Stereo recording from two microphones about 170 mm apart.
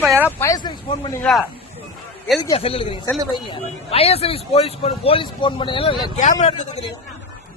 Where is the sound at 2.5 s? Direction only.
35° left (ahead or behind).